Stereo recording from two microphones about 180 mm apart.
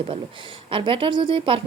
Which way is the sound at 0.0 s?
30° right (ahead or behind).